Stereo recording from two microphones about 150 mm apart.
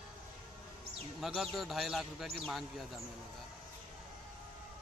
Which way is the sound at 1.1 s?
Centre (ahead or behind).